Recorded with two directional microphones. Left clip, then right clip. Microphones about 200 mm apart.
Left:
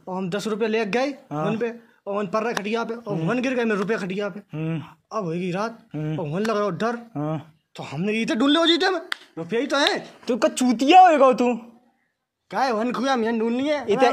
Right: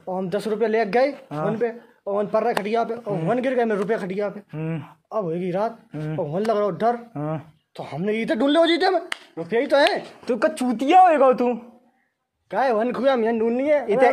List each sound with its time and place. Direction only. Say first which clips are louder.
0.0 s speech: right 2 dB; 65° left (ahead or behind)
1.3 s speech: right 1 dB; 20° left (ahead or behind)
1.6 s a man's voice: right 3 dB; 60° left (ahead or behind)
4.5 s speech: even; 25° left (ahead or behind)
5.1 s speech: right 2 dB; 55° left (ahead or behind)
5.9 s speech: left 1 dB; 25° left (ahead or behind)
6.2 s speech: right 2 dB; 55° left (ahead or behind)
7.2 s speech: even; 20° left (ahead or behind)
7.7 s a man's voice: right 1 dB; 55° left (ahead or behind)
10.2 s speech: left 1 dB; 20° left (ahead or behind)
12.4 s a man's voice: right 2 dB; 60° left (ahead or behind)